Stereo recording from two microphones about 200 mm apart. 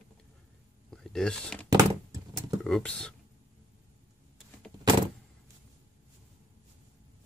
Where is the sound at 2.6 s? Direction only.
5° left (ahead or behind).